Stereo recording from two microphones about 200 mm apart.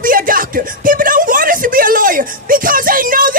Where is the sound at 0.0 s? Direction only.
45° right (ahead or behind).